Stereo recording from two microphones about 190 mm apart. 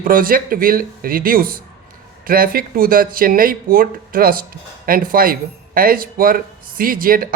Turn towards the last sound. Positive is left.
turn(degrees=-50)  # may be behind; listen again after turning